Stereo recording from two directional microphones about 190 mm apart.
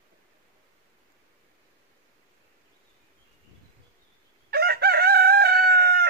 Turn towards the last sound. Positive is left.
turn(degrees=-55)  # may be behind; listen again after turning